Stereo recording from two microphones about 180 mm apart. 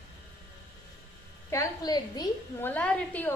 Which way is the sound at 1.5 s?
20° left (ahead or behind).